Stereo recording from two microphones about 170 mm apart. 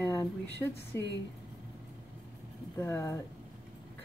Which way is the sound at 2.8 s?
15° left (ahead or behind).